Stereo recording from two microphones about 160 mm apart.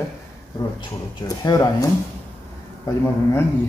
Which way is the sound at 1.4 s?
20° left (ahead or behind).